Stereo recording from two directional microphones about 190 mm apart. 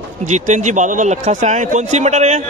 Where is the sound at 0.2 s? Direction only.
40° right (ahead or behind).